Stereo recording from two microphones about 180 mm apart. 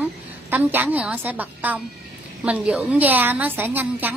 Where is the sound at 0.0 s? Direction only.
10° right (ahead or behind).